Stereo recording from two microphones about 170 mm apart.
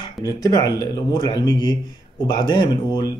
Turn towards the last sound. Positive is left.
turn(degrees=25)  # may be behind; listen again after turning